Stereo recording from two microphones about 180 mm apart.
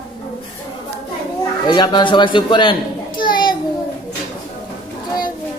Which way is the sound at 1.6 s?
25° left (ahead or behind).